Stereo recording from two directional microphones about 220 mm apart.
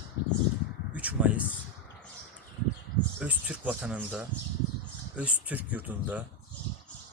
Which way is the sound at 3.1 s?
5° right (ahead or behind).